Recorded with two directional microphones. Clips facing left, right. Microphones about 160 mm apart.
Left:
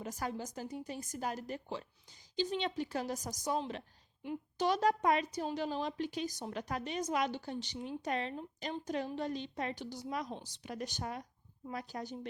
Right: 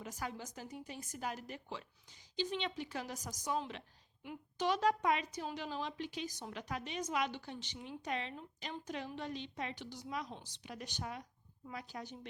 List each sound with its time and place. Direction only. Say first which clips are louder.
0.0 s a woman's voice: left 5 dB; 40° left (ahead or behind)